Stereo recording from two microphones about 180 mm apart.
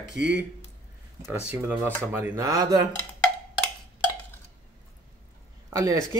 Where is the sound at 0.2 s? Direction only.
5° right (ahead or behind).